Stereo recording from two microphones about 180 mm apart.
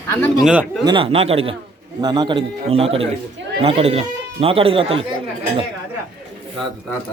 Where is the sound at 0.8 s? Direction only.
25° right (ahead or behind).